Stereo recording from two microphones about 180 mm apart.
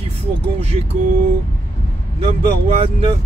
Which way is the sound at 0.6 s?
35° right (ahead or behind).